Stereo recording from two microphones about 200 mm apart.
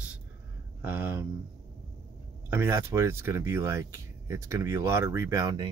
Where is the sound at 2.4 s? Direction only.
10° right (ahead or behind).